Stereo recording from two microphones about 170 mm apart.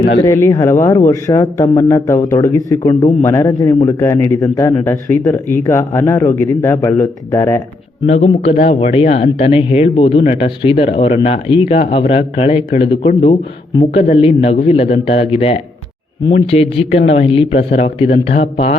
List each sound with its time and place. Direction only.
0.2 s a man's voice: 15° left (ahead or behind)
8.0 s speech: 35° left (ahead or behind)